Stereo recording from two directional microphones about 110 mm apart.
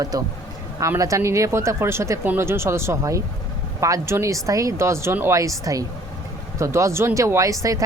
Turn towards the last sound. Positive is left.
turn(degrees=-30)  # may be behind; listen again after turning